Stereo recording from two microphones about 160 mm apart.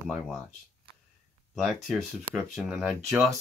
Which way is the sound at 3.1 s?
15° right (ahead or behind).